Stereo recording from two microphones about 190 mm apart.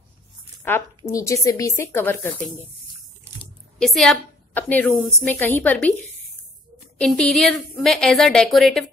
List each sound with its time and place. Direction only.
0.7 s a woman's voice: 15° left (ahead or behind)
3.8 s a woman's voice: centre (ahead or behind)
7.0 s a woman's voice: 5° left (ahead or behind)